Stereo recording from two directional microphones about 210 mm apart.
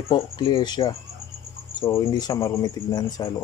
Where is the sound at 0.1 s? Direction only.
20° left (ahead or behind).